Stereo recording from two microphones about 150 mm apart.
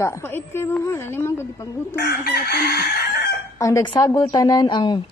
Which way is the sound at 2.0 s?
90° left.